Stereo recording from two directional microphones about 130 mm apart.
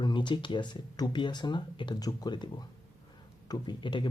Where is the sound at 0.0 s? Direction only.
35° left (ahead or behind).